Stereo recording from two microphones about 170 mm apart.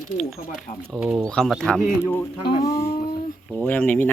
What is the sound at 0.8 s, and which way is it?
Speech, 5° right (ahead or behind).